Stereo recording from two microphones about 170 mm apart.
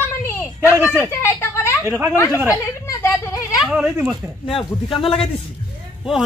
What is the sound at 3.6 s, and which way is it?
Speech, 5° right (ahead or behind).